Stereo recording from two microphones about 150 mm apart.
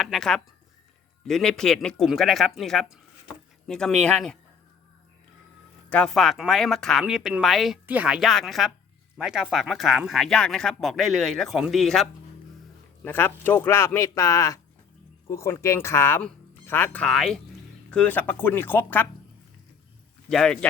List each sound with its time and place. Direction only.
0.0 s speech: centre (ahead or behind)
5.9 s speech: 5° left (ahead or behind)
13.1 s speech: 15° left (ahead or behind)
20.3 s speech: 5° left (ahead or behind)